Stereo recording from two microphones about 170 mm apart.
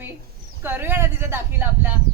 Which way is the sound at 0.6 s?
10° right (ahead or behind).